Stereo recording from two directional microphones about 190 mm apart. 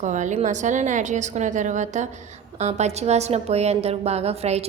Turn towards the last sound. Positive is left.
turn(degrees=-35)  # may be behind; listen again after turning